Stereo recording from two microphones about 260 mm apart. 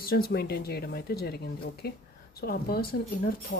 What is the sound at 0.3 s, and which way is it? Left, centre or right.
Speech, left.